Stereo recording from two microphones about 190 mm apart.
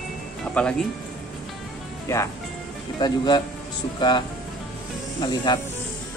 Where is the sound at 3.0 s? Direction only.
20° left (ahead or behind).